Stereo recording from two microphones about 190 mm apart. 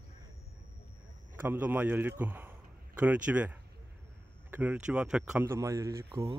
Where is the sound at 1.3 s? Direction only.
10° right (ahead or behind).